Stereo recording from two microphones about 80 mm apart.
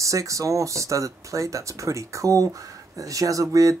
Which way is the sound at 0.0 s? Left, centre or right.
Right.